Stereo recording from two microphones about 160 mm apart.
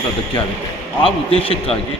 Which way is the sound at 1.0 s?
35° left (ahead or behind).